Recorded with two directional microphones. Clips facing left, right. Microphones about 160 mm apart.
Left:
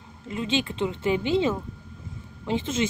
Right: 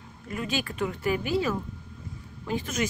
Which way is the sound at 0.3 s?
25° left (ahead or behind).